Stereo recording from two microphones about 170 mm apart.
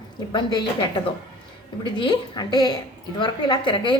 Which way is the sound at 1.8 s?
25° left (ahead or behind).